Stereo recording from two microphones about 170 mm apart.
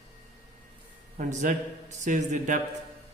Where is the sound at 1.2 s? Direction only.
50° right (ahead or behind).